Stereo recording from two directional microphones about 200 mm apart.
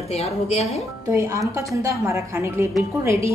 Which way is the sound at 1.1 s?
15° right (ahead or behind).